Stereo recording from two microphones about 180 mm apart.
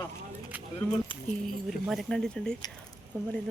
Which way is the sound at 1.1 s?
30° left (ahead or behind).